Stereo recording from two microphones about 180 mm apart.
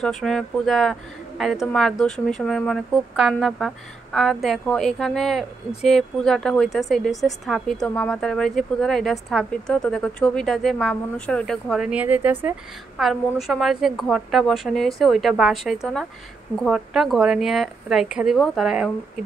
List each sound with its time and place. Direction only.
0.0 s speech: centre (ahead or behind)